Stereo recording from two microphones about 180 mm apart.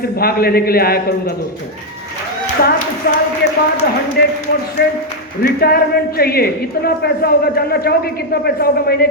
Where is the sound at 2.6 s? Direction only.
50° left (ahead or behind).